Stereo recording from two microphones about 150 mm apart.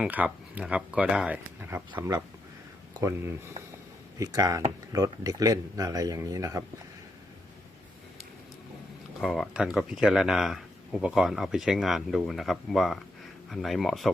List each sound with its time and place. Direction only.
0.0 s speech: 10° right (ahead or behind)
9.2 s speech: centre (ahead or behind)